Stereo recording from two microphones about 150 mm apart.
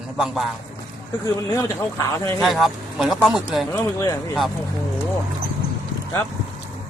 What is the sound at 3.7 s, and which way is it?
Speech, 20° left (ahead or behind).